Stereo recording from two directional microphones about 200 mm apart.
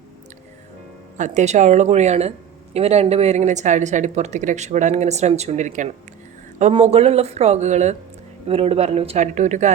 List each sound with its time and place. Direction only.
1.1 s speech: 35° right (ahead or behind)